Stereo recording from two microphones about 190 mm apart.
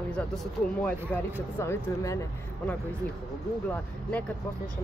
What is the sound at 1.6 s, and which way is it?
Speech, 15° left (ahead or behind).